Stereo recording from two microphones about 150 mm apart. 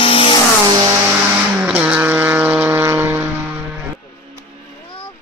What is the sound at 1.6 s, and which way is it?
Vehicle, 10° right (ahead or behind).